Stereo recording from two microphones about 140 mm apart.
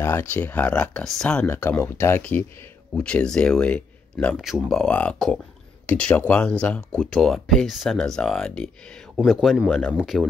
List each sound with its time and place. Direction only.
0.0 s speech: 15° left (ahead or behind)
4.4 s speech: centre (ahead or behind)